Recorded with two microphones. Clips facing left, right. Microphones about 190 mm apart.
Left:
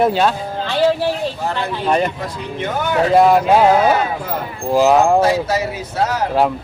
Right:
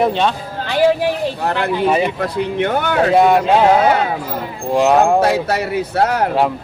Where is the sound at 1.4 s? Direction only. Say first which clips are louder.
Right 3 dB; 65° right (ahead or behind).